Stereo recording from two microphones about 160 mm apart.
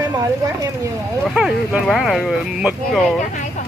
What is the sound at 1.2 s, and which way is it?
Speech, 5° right (ahead or behind).